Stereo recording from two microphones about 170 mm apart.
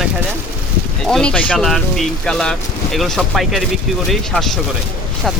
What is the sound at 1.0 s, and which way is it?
Speech, 5° left (ahead or behind).